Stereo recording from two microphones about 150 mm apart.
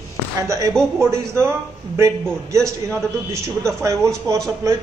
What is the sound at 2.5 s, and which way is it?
Speech, 20° right (ahead or behind).